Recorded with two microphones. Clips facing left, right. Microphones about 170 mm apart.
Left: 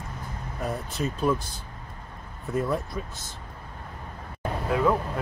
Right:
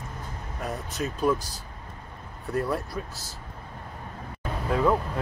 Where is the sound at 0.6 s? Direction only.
Centre (ahead or behind).